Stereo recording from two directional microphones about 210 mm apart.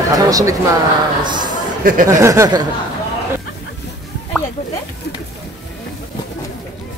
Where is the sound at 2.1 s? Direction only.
15° right (ahead or behind).